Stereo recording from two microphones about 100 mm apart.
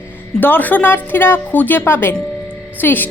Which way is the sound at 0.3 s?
20° left (ahead or behind).